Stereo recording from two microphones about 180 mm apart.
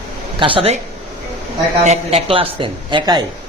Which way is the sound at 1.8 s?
35° right (ahead or behind).